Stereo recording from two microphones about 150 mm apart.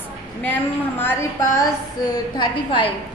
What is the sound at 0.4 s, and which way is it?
A woman's voice, 15° left (ahead or behind).